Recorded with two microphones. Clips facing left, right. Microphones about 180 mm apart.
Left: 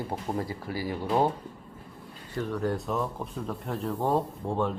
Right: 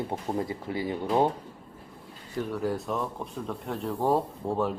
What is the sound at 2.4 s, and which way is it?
Speech, 5° right (ahead or behind).